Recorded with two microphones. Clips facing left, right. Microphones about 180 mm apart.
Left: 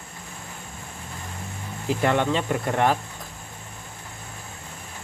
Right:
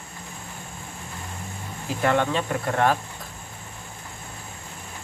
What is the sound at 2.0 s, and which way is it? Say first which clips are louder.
Speech: right 1 dB; 20° left (ahead or behind).